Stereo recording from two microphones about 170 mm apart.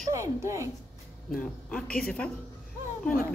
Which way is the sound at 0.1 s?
15° right (ahead or behind).